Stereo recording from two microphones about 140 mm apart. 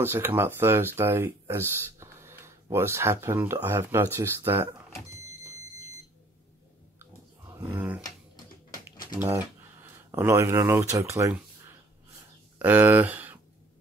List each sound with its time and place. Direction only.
0.0 s speech: 15° right (ahead or behind)
7.0 s a sound: 20° right (ahead or behind)
9.2 s speech: 15° right (ahead or behind)
12.5 s speech: 15° right (ahead or behind)